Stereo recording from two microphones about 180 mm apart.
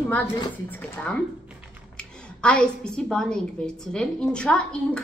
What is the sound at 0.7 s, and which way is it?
A woman's voice, 5° left (ahead or behind).